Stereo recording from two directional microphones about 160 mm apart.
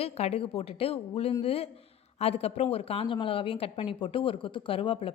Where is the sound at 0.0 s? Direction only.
40° left (ahead or behind).